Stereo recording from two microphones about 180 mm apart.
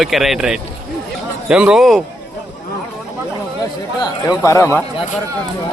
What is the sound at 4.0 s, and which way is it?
Speech, 20° left (ahead or behind).